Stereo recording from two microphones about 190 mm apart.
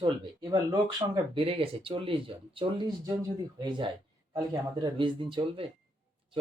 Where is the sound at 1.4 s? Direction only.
30° right (ahead or behind).